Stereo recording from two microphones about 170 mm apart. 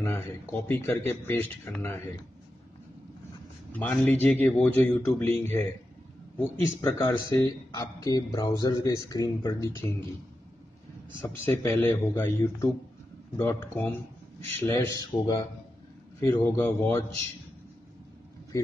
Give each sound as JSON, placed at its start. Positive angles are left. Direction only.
{"t": 0.0, "sound": "speech", "side_deg": 15}
{"t": 3.7, "sound": "speech", "side_deg": 10}
{"t": 11.1, "sound": "speech", "side_deg": 15}